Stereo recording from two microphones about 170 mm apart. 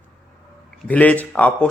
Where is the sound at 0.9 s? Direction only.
10° left (ahead or behind).